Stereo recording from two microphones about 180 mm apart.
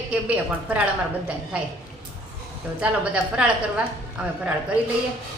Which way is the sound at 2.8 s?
5° right (ahead or behind).